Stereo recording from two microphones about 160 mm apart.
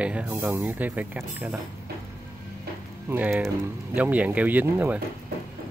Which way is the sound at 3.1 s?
10° right (ahead or behind).